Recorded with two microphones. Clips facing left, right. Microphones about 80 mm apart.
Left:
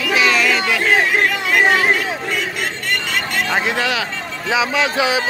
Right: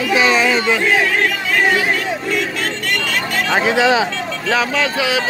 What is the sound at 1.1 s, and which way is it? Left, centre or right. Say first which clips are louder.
Chatter: left 1 dB; centre.